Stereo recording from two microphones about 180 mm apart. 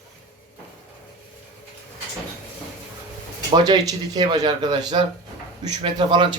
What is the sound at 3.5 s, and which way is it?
Speech, 20° right (ahead or behind).